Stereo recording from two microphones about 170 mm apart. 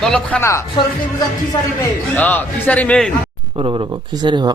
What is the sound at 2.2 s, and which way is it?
Speech, 10° left (ahead or behind).